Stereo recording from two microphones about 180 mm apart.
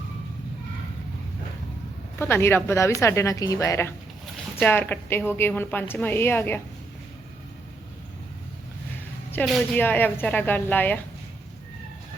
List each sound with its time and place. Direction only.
2.1 s a woman's voice: 15° left (ahead or behind)
9.3 s a woman's voice: centre (ahead or behind)